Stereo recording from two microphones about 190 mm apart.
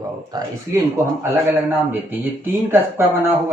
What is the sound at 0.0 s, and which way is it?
Speech, 20° right (ahead or behind).